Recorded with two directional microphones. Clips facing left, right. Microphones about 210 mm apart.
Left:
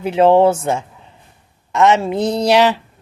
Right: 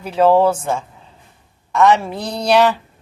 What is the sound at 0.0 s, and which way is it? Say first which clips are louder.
A woman's voice: left 2 dB; 25° left (ahead or behind).